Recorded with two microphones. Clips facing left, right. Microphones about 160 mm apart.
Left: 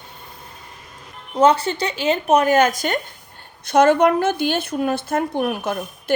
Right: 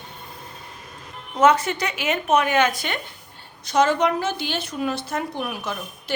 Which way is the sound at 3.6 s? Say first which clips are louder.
Left 5 dB; 55° left (ahead or behind).